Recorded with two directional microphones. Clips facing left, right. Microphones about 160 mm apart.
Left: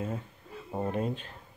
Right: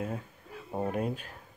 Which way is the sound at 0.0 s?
Centre (ahead or behind).